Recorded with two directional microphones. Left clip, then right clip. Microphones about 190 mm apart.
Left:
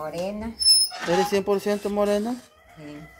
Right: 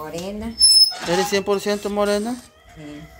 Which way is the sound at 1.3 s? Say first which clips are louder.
Right 3 dB; 10° left (ahead or behind).